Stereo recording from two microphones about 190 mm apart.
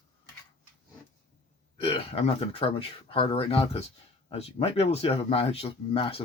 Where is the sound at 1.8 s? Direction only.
30° left (ahead or behind).